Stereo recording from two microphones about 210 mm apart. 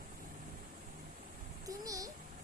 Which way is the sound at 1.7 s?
15° right (ahead or behind).